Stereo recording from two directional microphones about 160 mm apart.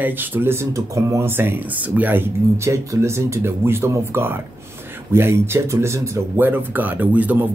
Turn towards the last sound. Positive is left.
turn(degrees=-10)  # may be behind; listen again after turning